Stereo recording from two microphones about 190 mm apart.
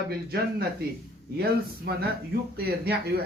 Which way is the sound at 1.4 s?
55° right (ahead or behind).